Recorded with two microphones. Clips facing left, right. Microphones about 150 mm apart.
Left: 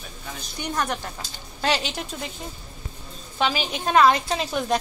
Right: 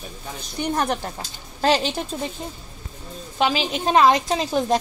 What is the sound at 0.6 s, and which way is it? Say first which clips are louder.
Speech: right 4 dB; 30° right (ahead or behind).